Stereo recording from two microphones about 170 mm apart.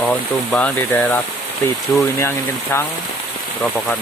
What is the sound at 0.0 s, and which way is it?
Speech, 5° left (ahead or behind).